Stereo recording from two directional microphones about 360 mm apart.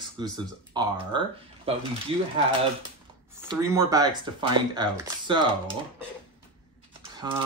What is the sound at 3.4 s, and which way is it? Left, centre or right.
Speech, centre.